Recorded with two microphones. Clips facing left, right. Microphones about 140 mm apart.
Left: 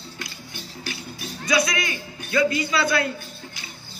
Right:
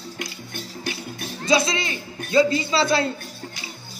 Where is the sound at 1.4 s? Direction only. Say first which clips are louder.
Right 2 dB; 25° right (ahead or behind).